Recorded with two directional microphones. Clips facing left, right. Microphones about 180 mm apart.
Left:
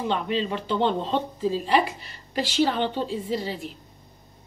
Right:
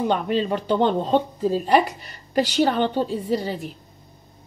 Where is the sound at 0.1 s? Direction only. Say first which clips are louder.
Right 4 dB; 45° right (ahead or behind).